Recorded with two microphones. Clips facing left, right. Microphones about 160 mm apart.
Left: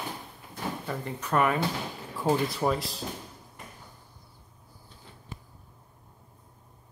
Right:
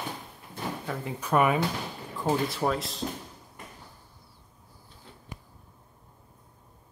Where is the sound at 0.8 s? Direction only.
5° right (ahead or behind).